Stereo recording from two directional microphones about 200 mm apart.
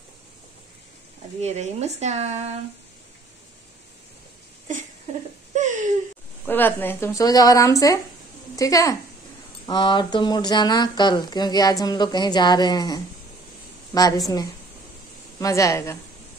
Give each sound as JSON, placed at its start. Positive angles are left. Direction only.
{"t": 1.4, "sound": "speech", "side_deg": -35}
{"t": 5.5, "sound": "a sound", "side_deg": -35}
{"t": 6.4, "sound": "speech", "side_deg": 10}